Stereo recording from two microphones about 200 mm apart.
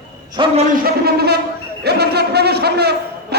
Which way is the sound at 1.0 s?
55° right (ahead or behind).